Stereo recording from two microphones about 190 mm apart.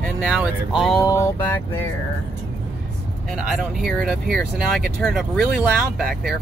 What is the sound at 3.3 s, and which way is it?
Speech, centre (ahead or behind).